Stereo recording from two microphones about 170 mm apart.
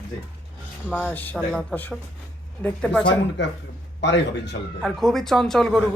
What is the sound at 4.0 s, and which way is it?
Speech, 90° left.